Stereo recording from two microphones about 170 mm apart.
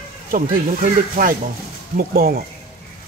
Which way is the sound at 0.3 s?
55° right (ahead or behind).